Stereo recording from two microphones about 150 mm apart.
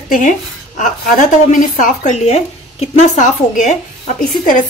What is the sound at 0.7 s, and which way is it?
A woman's voice, 55° left (ahead or behind).